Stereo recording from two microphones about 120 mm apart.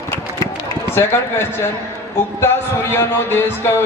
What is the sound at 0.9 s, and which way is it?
Speech, 20° left (ahead or behind).